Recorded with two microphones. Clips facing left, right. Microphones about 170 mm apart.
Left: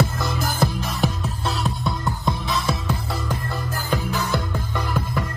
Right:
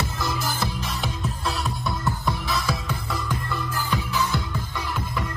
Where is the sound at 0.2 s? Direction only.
55° left (ahead or behind).